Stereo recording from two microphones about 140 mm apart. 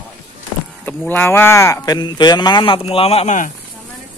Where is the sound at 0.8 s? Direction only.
15° left (ahead or behind); by 3.4 s 45° left (ahead or behind).